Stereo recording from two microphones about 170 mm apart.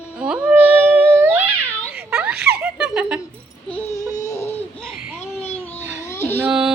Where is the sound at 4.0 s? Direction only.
20° left (ahead or behind).